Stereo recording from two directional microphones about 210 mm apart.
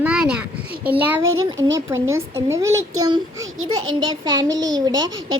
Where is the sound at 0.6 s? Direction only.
45° right (ahead or behind).